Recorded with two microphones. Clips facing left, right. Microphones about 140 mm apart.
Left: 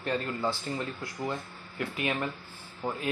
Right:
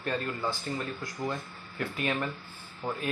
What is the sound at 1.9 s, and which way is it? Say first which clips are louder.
Speech: even; 15° left (ahead or behind).